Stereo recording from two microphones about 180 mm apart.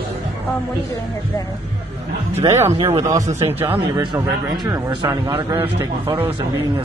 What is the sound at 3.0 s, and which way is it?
Speech, 20° right (ahead or behind).